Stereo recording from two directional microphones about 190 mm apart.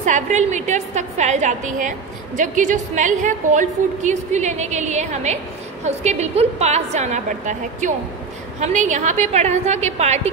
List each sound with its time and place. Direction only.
0.0 s a woman's voice: 40° right (ahead or behind)